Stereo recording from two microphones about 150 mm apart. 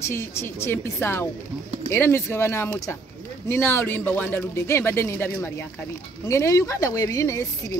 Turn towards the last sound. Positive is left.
turn(degrees=20)  # may be behind; listen again after turning